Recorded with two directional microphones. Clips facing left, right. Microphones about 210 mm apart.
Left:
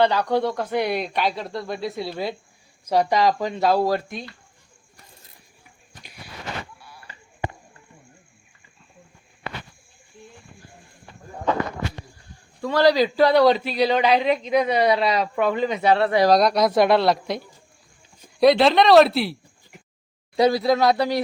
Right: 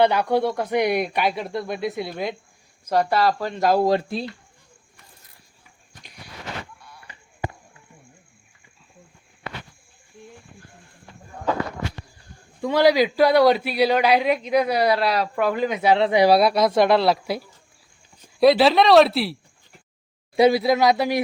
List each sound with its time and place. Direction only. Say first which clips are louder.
0.0 s a man's voice: right 1 dB; 10° right (ahead or behind)
2.9 s speech: left 1 dB; 15° left (ahead or behind)
3.5 s speech: right 1 dB; 5° right (ahead or behind)
3.8 s speech: right 3 dB; 30° right (ahead or behind)
6.7 s a sound: left 1 dB; 5° left (ahead or behind)
12.6 s a man's voice: right 1 dB; 10° right (ahead or behind)